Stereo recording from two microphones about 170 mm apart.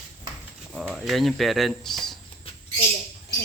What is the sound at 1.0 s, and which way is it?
Speech, centre (ahead or behind).